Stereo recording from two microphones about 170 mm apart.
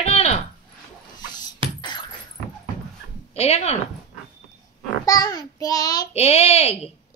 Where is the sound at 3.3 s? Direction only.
40° left (ahead or behind).